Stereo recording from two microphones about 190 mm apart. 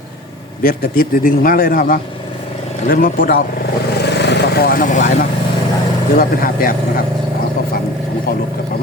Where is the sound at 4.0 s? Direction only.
60° left (ahead or behind); by 5.3 s 40° left (ahead or behind).